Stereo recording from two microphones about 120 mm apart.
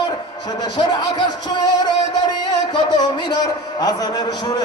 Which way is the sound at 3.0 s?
35° left (ahead or behind).